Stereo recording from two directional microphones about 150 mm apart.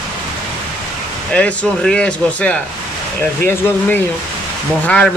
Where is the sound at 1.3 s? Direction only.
10° left (ahead or behind).